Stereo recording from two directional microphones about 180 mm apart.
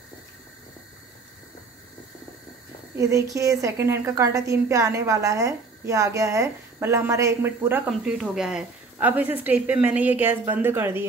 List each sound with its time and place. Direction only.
3.0 s a woman's voice: 20° right (ahead or behind)